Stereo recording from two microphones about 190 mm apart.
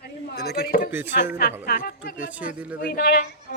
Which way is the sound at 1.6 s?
50° left (ahead or behind).